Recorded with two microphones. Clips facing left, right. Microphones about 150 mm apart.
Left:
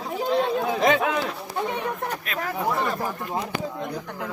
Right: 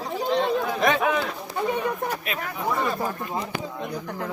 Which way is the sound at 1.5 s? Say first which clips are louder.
Right 3 dB; 5° right (ahead or behind).